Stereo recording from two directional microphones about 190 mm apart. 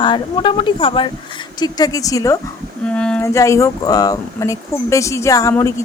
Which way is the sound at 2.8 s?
5° left (ahead or behind).